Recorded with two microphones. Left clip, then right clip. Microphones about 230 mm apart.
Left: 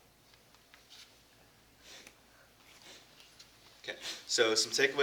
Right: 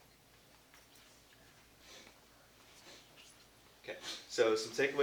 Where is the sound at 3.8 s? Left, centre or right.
Left.